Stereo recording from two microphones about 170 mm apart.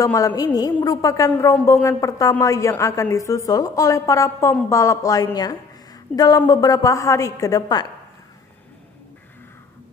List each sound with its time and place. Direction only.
0.0 s a woman's voice: 20° left (ahead or behind)